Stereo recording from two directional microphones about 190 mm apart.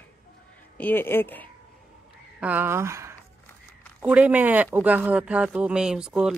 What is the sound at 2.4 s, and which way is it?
Speech, 10° right (ahead or behind).